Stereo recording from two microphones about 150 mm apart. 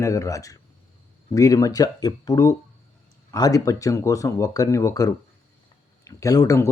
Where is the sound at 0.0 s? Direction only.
20° left (ahead or behind).